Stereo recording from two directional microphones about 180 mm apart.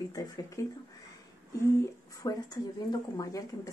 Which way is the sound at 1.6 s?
20° left (ahead or behind).